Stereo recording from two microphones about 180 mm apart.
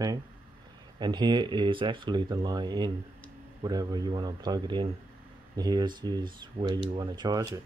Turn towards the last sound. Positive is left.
turn(degrees=-20)  # may be behind; listen again after turning